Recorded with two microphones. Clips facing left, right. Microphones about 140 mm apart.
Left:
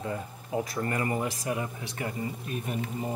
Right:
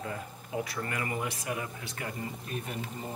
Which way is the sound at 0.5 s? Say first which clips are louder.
Left 4 dB; 30° left (ahead or behind).